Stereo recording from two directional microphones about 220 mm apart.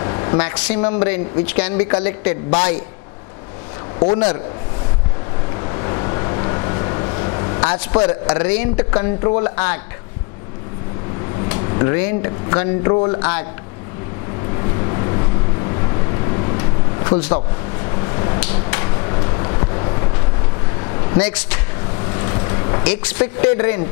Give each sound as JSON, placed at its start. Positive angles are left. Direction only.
{"t": 0.0, "sound": "speech", "side_deg": 20}
{"t": 1.4, "sound": "a man's voice", "side_deg": 10}
{"t": 4.0, "sound": "speech", "side_deg": 30}
{"t": 5.6, "sound": "vehicle", "side_deg": 20}
{"t": 8.7, "sound": "speech", "side_deg": 25}
{"t": 11.6, "sound": "speech", "side_deg": 20}
{"t": 14.6, "sound": "vehicle", "side_deg": 25}
{"t": 18.0, "sound": "a sound", "side_deg": 20}
{"t": 21.2, "sound": "a man's voice", "side_deg": 10}
{"t": 22.0, "sound": "vehicle", "side_deg": 20}
{"t": 22.8, "sound": "a man's voice", "side_deg": 15}